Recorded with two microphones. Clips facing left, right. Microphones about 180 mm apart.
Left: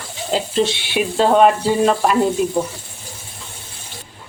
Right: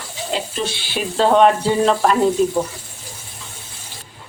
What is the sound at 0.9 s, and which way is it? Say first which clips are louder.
Sizzle: even; 10° left (ahead or behind).